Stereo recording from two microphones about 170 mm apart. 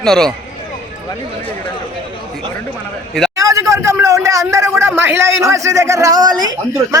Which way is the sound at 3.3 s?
20° right (ahead or behind).